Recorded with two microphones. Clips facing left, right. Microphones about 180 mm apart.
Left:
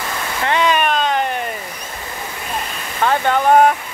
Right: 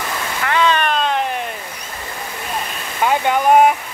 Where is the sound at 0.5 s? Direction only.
20° left (ahead or behind).